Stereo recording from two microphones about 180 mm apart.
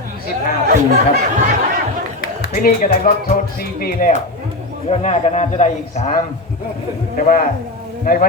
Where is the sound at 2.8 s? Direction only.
45° left (ahead or behind).